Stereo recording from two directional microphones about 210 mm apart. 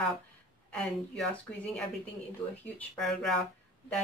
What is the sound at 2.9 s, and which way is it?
Speech, centre (ahead or behind).